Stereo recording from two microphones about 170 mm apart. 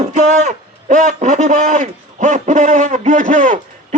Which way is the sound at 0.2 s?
45° right (ahead or behind).